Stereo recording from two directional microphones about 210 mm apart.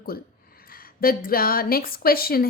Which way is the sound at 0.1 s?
45° left (ahead or behind).